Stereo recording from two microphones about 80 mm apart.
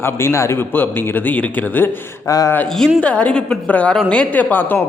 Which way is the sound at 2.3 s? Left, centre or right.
Left.